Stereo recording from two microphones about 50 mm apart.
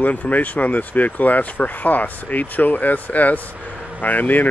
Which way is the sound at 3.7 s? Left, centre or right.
Right.